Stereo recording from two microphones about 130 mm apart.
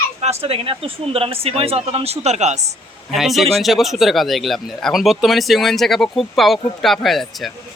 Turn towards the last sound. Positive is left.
turn(degrees=0)  # may be behind; listen again after turning